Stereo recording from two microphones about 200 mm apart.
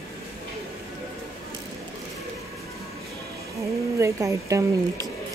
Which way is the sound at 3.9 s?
15° right (ahead or behind).